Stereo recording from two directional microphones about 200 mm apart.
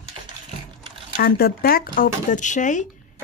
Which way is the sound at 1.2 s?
50° left (ahead or behind).